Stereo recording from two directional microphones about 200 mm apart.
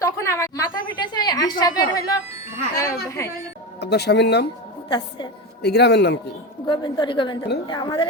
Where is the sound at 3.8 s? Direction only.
55° left (ahead or behind).